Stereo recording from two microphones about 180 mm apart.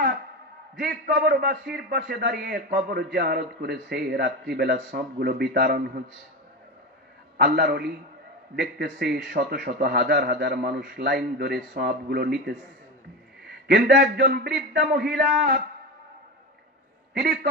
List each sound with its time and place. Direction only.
0.7 s a man's voice: 60° right (ahead or behind)
7.4 s a man's voice: 60° right (ahead or behind)
17.1 s a man's voice: 60° right (ahead or behind)